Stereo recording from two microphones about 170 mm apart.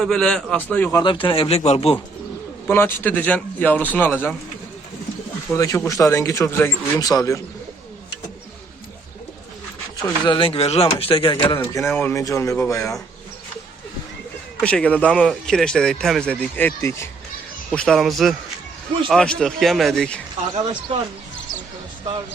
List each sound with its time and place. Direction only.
0.0 s speech: 5° left (ahead or behind)
1.0 s speech: 30° left (ahead or behind)
2.6 s a man's voice: 15° left (ahead or behind)
5.5 s a man's voice: 20° left (ahead or behind)
10.0 s speech: 30° left (ahead or behind)
11.6 s a man's voice: 20° left (ahead or behind)
14.6 s speech: 5° left (ahead or behind)
17.7 s speech: 5° left (ahead or behind)